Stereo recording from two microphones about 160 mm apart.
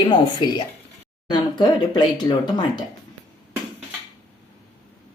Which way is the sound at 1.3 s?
30° left (ahead or behind).